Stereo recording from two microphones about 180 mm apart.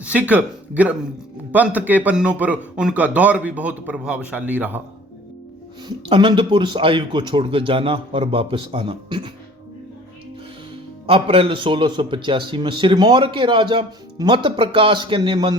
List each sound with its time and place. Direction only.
0.0 s a man's voice: 10° right (ahead or behind)
6.1 s a man's voice: 25° right (ahead or behind)
11.0 s a man's voice: 30° right (ahead or behind)